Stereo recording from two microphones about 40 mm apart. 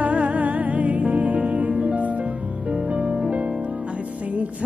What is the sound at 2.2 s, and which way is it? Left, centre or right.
Music, right.